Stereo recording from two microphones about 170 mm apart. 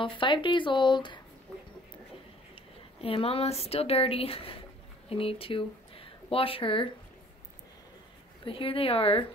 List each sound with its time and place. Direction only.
0.0 s speech: 30° left (ahead or behind)
2.5 s speech: 35° left (ahead or behind)
8.5 s a woman's voice: 30° left (ahead or behind)